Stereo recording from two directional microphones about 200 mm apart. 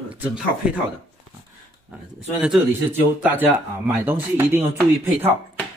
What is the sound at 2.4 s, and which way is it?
Speech, 5° right (ahead or behind).